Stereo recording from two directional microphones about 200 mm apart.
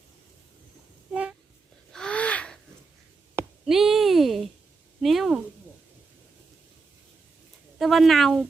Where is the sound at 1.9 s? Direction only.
5° left (ahead or behind).